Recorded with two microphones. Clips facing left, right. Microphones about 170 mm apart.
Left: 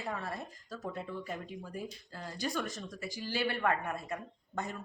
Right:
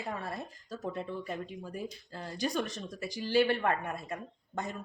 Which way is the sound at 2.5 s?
35° right (ahead or behind).